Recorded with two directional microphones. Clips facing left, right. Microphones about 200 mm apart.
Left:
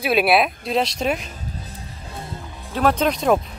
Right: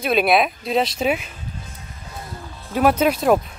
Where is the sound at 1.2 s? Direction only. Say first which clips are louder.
Left 2 dB; 35° left (ahead or behind).